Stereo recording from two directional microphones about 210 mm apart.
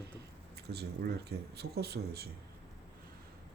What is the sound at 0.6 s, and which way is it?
Speech, 50° right (ahead or behind).